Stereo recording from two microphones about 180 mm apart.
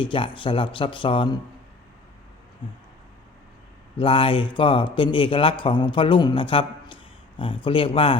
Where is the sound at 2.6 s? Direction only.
25° left (ahead or behind).